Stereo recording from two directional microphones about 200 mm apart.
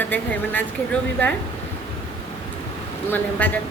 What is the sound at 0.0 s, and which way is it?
Speech, 10° left (ahead or behind).